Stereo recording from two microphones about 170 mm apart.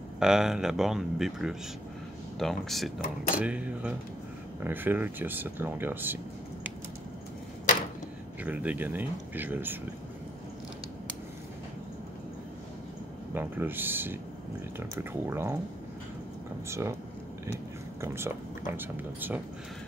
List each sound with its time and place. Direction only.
0.2 s speech: 5° right (ahead or behind)
8.5 s speech: 10° right (ahead or behind)
13.3 s speech: 10° right (ahead or behind)
16.6 s speech: 15° right (ahead or behind)
18.0 s speech: 15° right (ahead or behind)